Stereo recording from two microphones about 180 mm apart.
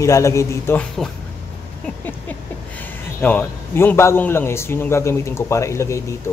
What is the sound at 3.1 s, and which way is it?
Speech, 10° left (ahead or behind).